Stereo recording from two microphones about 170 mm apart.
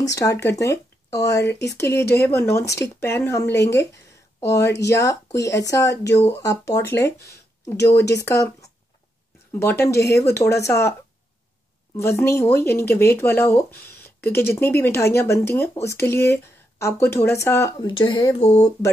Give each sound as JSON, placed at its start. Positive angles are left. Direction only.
{"t": 0.1, "sound": "speech", "side_deg": 20}
{"t": 12.0, "sound": "speech", "side_deg": 15}
{"t": 17.8, "sound": "speech", "side_deg": 30}